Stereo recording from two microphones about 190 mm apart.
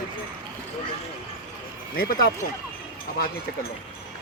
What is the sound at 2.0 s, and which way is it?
Speech, 50° left (ahead or behind).